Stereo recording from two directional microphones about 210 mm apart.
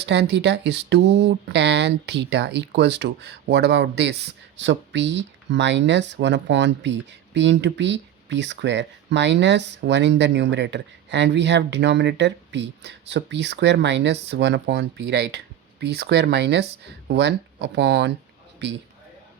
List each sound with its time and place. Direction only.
0.0 s speech: 55° right (ahead or behind)